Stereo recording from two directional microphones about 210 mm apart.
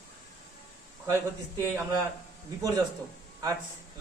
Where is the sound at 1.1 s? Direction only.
15° right (ahead or behind).